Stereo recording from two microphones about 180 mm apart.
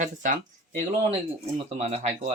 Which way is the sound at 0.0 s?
45° right (ahead or behind).